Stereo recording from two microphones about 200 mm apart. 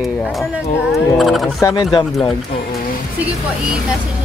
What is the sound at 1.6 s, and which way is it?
Speech, 15° left (ahead or behind).